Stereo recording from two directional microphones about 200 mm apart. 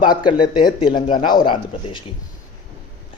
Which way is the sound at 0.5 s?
25° left (ahead or behind).